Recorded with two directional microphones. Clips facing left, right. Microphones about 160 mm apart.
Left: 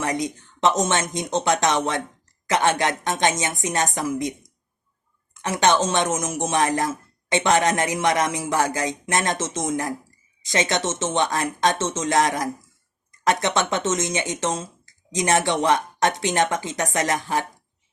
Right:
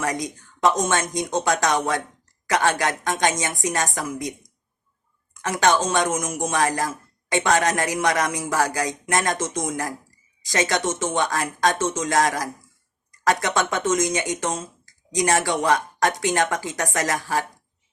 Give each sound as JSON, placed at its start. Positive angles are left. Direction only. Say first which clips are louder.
{"t": 0.0, "sound": "speech", "louder": "left 1 dB", "side_deg": 20}